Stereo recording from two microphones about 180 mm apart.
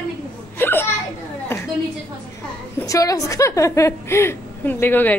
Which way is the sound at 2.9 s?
20° left (ahead or behind).